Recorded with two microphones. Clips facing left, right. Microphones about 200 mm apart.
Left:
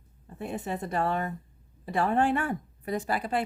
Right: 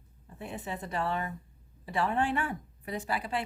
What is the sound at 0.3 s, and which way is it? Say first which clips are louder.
A woman's voice: left 5 dB; 45° left (ahead or behind).